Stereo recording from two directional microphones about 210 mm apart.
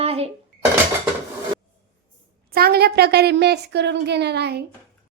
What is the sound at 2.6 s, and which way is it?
A woman's voice, 50° right (ahead or behind).